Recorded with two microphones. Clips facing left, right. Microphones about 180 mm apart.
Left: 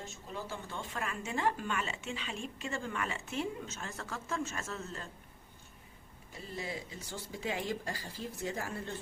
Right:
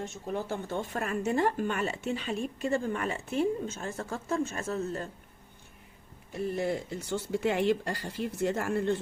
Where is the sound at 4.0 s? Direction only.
30° right (ahead or behind).